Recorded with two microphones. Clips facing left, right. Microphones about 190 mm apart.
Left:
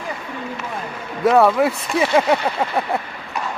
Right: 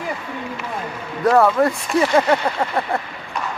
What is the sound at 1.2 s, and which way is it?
Speech, centre (ahead or behind).